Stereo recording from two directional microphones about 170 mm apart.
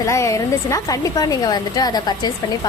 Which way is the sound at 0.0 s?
20° left (ahead or behind).